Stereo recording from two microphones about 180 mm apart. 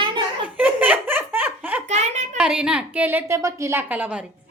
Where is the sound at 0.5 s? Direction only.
10° right (ahead or behind).